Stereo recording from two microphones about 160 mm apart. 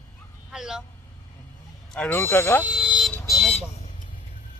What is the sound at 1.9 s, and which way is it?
Speech, 10° left (ahead or behind).